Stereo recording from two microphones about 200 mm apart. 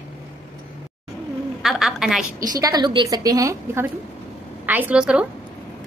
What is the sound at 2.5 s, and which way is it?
A woman's voice, 20° right (ahead or behind).